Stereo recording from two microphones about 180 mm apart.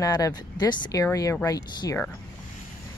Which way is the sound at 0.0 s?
20° left (ahead or behind).